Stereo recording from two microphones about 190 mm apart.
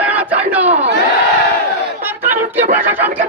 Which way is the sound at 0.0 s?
10° right (ahead or behind).